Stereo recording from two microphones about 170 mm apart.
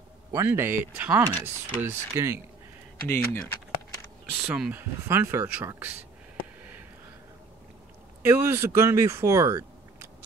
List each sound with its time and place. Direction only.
0.3 s speech: 15° right (ahead or behind)
3.1 s speech: 10° left (ahead or behind)
4.4 s speech: 10° right (ahead or behind)
8.3 s speech: 15° right (ahead or behind)